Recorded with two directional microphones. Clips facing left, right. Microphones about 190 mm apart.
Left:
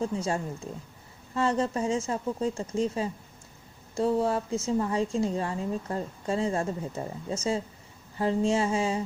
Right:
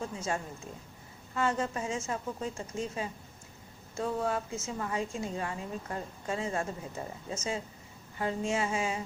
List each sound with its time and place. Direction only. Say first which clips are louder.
0.0 s a woman's voice: left 6 dB; 30° left (ahead or behind)
1.4 s a woman's voice: left 5 dB; 35° left (ahead or behind)